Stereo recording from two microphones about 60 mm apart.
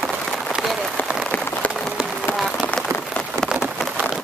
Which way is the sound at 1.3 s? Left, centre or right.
Left.